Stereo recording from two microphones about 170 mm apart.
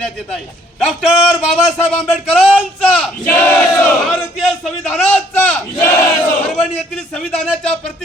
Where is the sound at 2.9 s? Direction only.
5° left (ahead or behind).